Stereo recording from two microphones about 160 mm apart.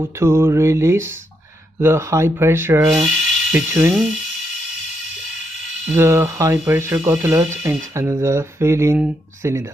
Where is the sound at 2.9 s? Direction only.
5° right (ahead or behind).